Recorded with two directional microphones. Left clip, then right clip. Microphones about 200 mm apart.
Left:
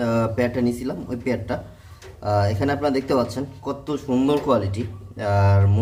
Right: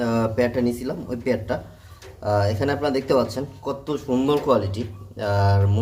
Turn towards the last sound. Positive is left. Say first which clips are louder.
# left 1 dB
turn(degrees=0)  # may be behind; listen again after turning